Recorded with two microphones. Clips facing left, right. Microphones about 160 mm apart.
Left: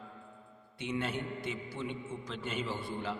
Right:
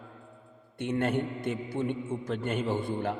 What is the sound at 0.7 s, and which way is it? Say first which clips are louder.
A man's voice: right 7 dB; 55° right (ahead or behind).